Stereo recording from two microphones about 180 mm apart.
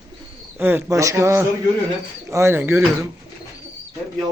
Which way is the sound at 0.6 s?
10° right (ahead or behind).